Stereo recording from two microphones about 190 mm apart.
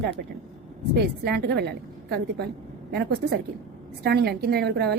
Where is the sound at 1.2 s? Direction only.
60° right (ahead or behind).